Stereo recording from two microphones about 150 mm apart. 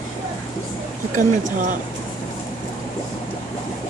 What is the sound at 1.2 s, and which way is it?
Speech, 60° right (ahead or behind).